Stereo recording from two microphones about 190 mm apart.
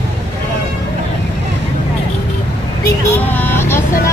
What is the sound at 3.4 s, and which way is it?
Vehicle, 10° left (ahead or behind).